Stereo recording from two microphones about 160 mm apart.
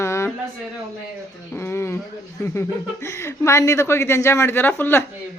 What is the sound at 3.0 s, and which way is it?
Speech, 15° left (ahead or behind).